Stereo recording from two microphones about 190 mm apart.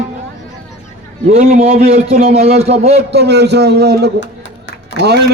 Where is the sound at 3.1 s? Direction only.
60° right (ahead or behind).